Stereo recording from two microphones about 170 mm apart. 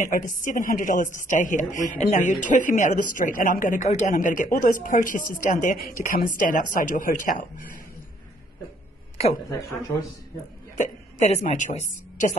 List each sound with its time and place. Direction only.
0.0 s speech: 50° left (ahead or behind)
10.8 s a woman's voice: 45° left (ahead or behind)